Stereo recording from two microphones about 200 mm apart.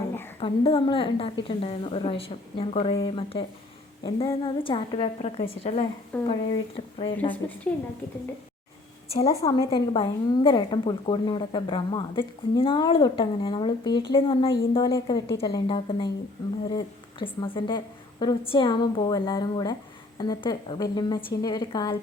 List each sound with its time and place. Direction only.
0.3 s a woman's voice: 30° left (ahead or behind)
7.3 s a woman's voice: 5° left (ahead or behind)
9.1 s a woman's voice: 15° left (ahead or behind)